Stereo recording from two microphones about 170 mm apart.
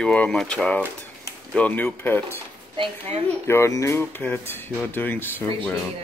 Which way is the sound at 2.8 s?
40° right (ahead or behind).